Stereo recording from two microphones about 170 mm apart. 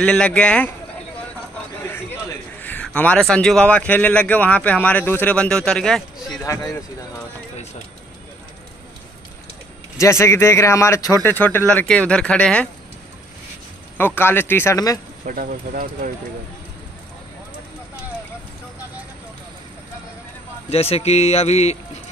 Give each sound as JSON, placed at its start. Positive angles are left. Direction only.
{"t": 0.0, "sound": "a man's voice", "side_deg": 5}
{"t": 2.6, "sound": "a man's voice", "side_deg": 10}
{"t": 6.4, "sound": "a man's voice", "side_deg": 15}
{"t": 9.9, "sound": "a man's voice", "side_deg": 15}
{"t": 13.9, "sound": "a man's voice", "side_deg": 10}
{"t": 15.2, "sound": "speech", "side_deg": -55}
{"t": 20.7, "sound": "speech", "side_deg": 35}